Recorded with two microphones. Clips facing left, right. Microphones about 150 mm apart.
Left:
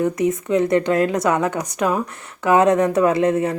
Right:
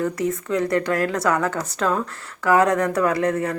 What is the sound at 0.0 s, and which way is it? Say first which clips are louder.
A woman's voice: left 4 dB; 20° left (ahead or behind).